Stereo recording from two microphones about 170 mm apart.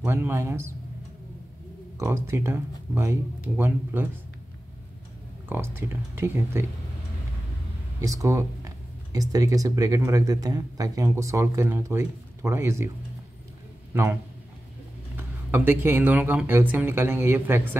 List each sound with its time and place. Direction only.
0.0 s speech: 15° right (ahead or behind)
2.0 s speech: 15° right (ahead or behind)
5.5 s speech: 15° right (ahead or behind)
8.0 s speech: 20° right (ahead or behind)
15.1 s speech: 10° right (ahead or behind)